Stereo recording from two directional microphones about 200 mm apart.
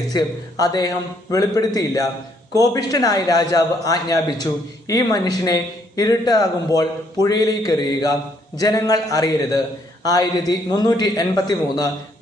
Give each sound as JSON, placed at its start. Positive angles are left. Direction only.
{"t": 0.1, "sound": "a man's voice", "side_deg": 20}